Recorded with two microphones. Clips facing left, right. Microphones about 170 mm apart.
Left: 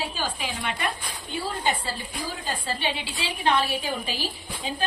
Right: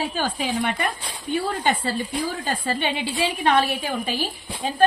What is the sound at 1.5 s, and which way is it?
A woman's voice, 55° right (ahead or behind).